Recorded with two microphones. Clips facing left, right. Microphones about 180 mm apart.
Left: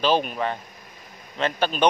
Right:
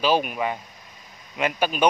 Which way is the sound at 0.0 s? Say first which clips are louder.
Even; 10° right (ahead or behind).